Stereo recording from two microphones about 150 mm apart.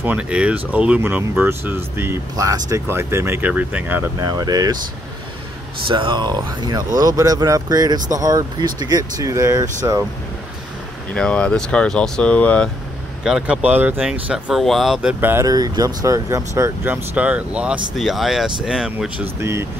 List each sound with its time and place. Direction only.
0.0 s speech: 10° right (ahead or behind)
4.2 s speech: 25° right (ahead or behind)
5.9 s speech: 35° right (ahead or behind)
11.1 s speech: 5° left (ahead or behind)
13.2 s speech: 5° right (ahead or behind)
15.0 s speech: 10° right (ahead or behind)
19.4 s speech: 15° right (ahead or behind)